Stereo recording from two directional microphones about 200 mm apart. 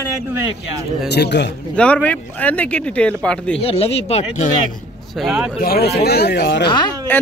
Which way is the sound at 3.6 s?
30° left (ahead or behind).